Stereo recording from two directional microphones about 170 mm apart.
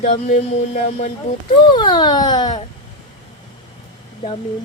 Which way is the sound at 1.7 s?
25° left (ahead or behind).